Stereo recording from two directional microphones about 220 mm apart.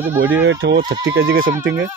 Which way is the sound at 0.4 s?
55° right (ahead or behind).